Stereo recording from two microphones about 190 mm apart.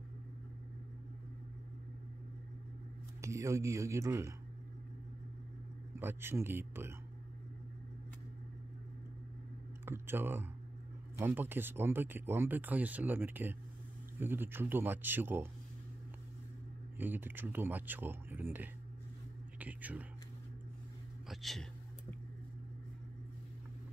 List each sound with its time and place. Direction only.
3.2 s speech: 15° right (ahead or behind)
5.9 s speech: 10° right (ahead or behind)
9.8 s speech: 10° right (ahead or behind)
17.0 s speech: 10° right (ahead or behind)
21.3 s speech: centre (ahead or behind)